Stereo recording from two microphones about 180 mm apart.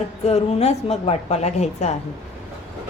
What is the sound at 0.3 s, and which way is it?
A woman's voice, 35° left (ahead or behind).